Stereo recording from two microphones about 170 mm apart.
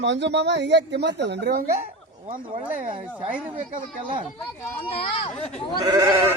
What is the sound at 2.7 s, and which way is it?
Speech, 50° right (ahead or behind).